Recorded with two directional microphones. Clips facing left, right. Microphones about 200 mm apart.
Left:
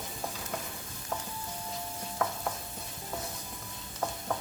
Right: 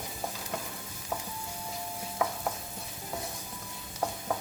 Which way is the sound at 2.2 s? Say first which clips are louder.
Right 2 dB; 10° right (ahead or behind).